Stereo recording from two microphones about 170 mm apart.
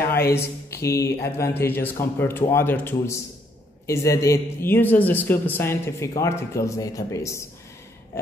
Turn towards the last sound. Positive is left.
turn(degrees=15)  # may be behind; listen again after turning